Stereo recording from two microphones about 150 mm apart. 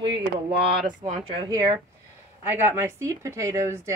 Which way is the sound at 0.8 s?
55° right (ahead or behind).